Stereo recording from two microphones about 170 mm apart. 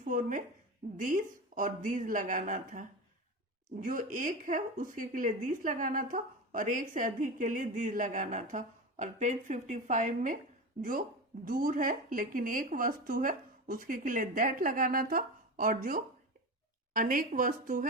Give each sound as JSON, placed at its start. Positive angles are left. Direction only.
{"t": 0.0, "sound": "a woman's voice", "side_deg": -50}
{"t": 11.4, "sound": "speech", "side_deg": -55}